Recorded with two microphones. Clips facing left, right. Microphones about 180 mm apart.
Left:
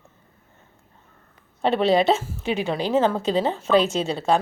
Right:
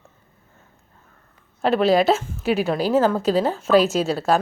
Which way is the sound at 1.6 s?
Centre (ahead or behind).